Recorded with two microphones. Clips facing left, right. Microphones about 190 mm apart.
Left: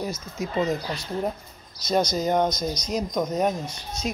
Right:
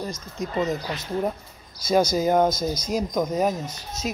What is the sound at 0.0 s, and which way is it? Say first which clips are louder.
Speech: left 1 dB; 5° left (ahead or behind).